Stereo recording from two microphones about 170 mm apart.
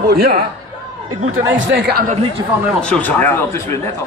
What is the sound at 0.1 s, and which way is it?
Speech, 65° right (ahead or behind).